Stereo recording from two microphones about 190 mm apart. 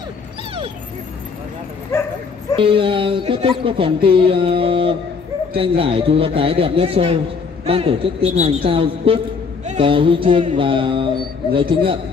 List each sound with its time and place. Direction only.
2.5 s a woman's voice: 30° right (ahead or behind)